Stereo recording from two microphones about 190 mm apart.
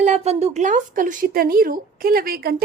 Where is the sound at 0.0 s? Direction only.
35° right (ahead or behind).